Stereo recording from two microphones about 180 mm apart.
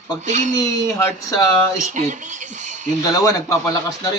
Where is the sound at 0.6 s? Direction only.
20° left (ahead or behind).